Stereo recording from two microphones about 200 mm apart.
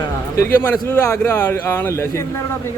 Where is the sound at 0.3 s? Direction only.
10° left (ahead or behind).